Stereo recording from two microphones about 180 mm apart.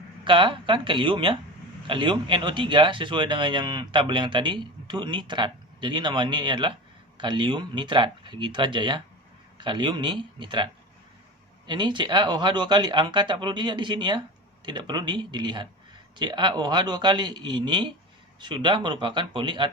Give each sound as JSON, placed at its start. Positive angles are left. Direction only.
{"t": 0.3, "sound": "speech", "side_deg": -25}